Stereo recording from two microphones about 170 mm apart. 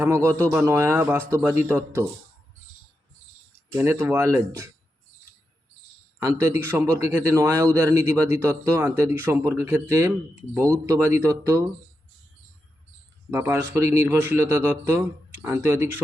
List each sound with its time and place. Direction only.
0.0 s a man's voice: 15° right (ahead or behind)
3.8 s a man's voice: 15° right (ahead or behind)
6.1 s a man's voice: 15° right (ahead or behind)
13.3 s a man's voice: 10° right (ahead or behind)